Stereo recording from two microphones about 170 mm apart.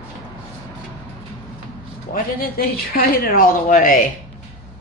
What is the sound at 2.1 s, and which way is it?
Speech, 60° left (ahead or behind).